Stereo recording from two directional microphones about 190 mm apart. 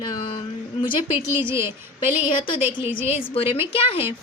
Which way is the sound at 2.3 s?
25° left (ahead or behind).